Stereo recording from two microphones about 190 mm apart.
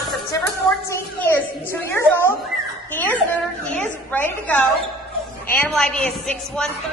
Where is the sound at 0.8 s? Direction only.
10° left (ahead or behind).